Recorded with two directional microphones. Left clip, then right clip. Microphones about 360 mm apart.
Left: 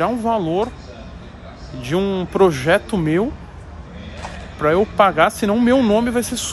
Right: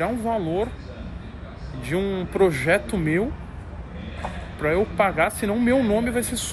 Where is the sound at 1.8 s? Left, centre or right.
Centre.